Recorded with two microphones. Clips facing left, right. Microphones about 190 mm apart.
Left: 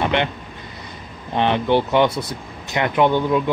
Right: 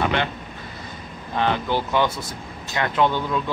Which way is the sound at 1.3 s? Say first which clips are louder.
Left 5 dB; 20° left (ahead or behind).